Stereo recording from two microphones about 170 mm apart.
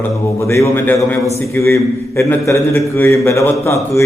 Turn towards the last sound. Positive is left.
turn(degrees=15)  # may be behind; listen again after turning